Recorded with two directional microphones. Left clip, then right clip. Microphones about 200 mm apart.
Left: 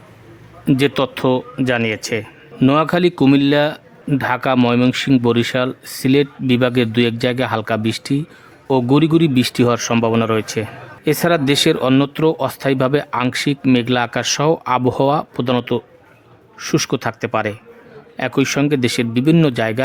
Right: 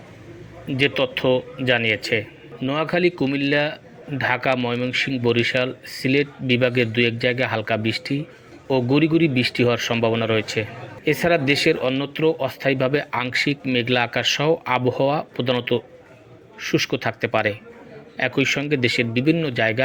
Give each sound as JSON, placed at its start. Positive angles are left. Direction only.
{"t": 0.8, "sound": "speech", "side_deg": 30}